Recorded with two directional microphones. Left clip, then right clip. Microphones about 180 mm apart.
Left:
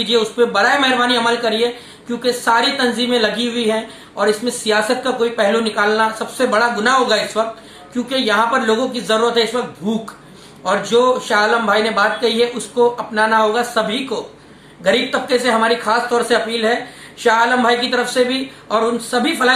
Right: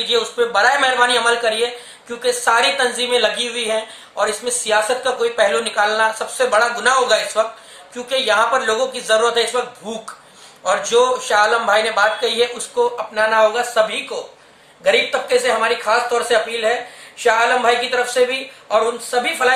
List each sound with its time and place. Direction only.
0.0 s speech: 10° right (ahead or behind)